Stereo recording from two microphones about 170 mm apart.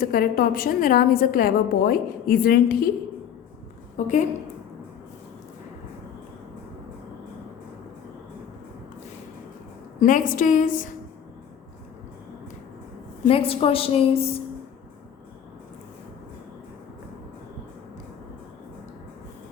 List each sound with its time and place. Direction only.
0.0 s a woman's voice: 60° left (ahead or behind)
3.9 s a woman's voice: 45° left (ahead or behind)
10.0 s a woman's voice: 50° left (ahead or behind)
13.2 s a woman's voice: 35° left (ahead or behind)